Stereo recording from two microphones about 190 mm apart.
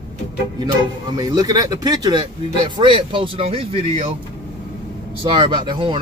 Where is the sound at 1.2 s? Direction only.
20° right (ahead or behind).